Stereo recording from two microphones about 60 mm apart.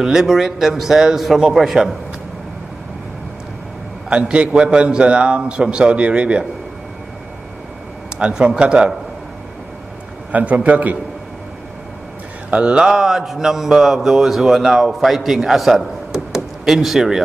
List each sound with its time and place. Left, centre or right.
0.0 s a man's voice: centre
4.1 s a man's voice: centre
8.2 s a man's voice: centre
10.3 s a man's voice: right
12.4 s a man's voice: centre